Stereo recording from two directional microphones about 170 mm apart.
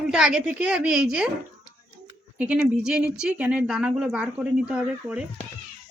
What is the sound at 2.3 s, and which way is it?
Speech, 10° right (ahead or behind).